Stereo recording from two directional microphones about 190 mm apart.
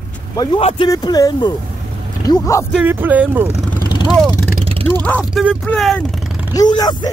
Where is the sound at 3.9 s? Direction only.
20° left (ahead or behind).